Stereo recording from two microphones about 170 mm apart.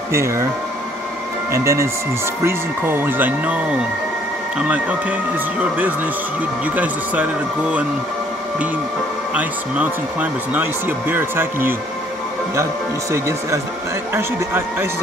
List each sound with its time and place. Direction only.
0.1 s speech: 15° right (ahead or behind)
1.5 s speech: 15° right (ahead or behind)
4.6 s speech: 10° right (ahead or behind)
9.3 s speech: 10° right (ahead or behind)
14.1 s speech: 15° right (ahead or behind)